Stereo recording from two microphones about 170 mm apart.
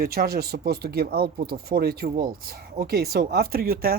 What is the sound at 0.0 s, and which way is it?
Speech, 65° right (ahead or behind).